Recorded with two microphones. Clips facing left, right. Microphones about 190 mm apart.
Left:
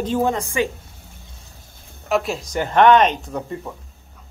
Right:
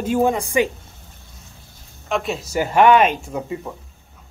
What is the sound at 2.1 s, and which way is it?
Speech, centre (ahead or behind).